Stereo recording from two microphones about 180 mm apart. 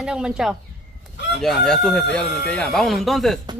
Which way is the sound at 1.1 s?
70° left (ahead or behind).